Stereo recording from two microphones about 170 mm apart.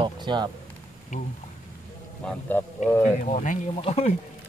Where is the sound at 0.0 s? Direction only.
25° right (ahead or behind).